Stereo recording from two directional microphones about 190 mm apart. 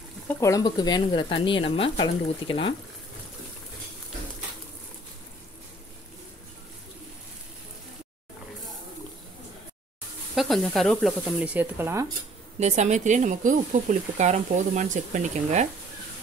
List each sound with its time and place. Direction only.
0.4 s speech: 20° left (ahead or behind)
10.3 s speech: centre (ahead or behind)
12.5 s speech: 35° right (ahead or behind)